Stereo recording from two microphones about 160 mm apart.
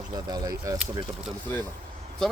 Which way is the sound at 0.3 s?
25° right (ahead or behind).